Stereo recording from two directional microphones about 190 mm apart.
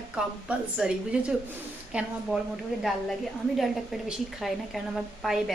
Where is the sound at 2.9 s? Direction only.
Centre (ahead or behind).